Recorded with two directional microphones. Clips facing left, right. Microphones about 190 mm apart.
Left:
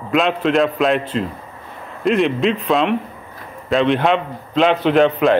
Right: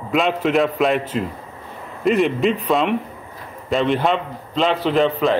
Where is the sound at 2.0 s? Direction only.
Centre (ahead or behind).